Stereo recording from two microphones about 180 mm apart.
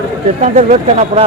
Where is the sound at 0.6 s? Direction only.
40° right (ahead or behind).